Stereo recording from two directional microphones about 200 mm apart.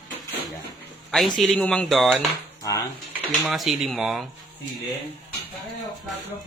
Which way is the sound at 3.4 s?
Centre (ahead or behind).